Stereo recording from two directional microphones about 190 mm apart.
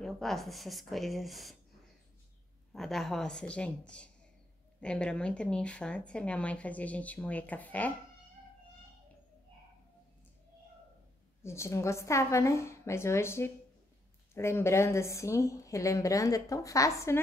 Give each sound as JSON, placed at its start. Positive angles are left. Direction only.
{"t": 0.0, "sound": "speech", "side_deg": 0}
{"t": 2.7, "sound": "speech", "side_deg": 0}
{"t": 11.4, "sound": "speech", "side_deg": 15}